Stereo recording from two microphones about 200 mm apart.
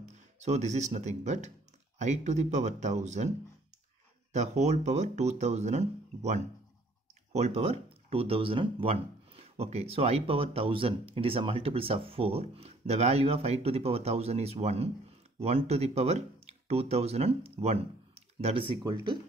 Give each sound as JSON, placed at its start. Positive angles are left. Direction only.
{"t": 0.0, "sound": "speech", "side_deg": -35}